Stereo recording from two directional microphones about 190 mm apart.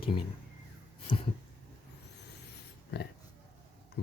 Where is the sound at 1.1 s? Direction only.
25° left (ahead or behind).